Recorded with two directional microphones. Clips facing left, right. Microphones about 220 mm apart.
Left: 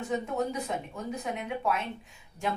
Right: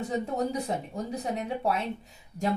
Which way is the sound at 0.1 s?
35° right (ahead or behind).